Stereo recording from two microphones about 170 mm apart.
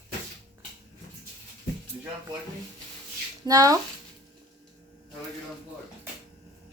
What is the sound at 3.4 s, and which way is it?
Speech, 20° right (ahead or behind).